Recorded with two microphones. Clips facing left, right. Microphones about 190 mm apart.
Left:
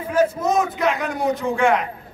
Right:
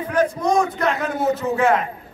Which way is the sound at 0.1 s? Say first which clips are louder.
Even; 5° left (ahead or behind).